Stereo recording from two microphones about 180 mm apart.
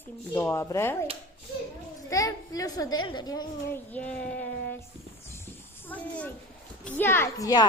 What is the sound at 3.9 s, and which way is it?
Speech, 5° left (ahead or behind).